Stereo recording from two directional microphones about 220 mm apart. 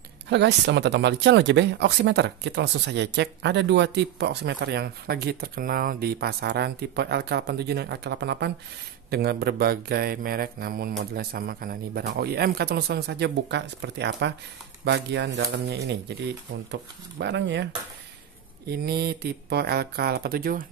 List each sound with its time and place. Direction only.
0.3 s speech: 50° right (ahead or behind)
18.7 s speech: 45° right (ahead or behind)